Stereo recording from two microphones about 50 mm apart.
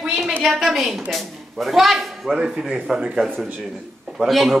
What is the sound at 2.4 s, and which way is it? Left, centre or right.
Speech, centre.